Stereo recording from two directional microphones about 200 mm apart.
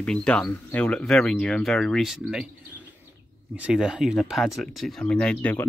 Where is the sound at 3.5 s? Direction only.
5° right (ahead or behind).